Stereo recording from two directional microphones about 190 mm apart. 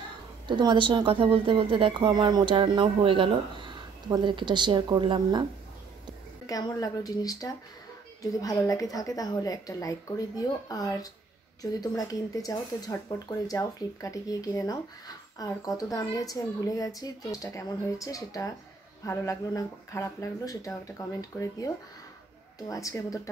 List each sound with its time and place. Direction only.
0.5 s speech: 25° right (ahead or behind)
6.4 s speech: 20° left (ahead or behind)
22.6 s speech: 15° left (ahead or behind)